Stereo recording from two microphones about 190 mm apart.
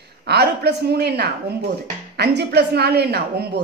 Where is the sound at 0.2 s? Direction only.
60° right (ahead or behind).